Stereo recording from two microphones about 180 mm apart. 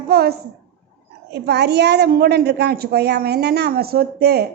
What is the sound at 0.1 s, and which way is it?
A child's voice, 60° right (ahead or behind).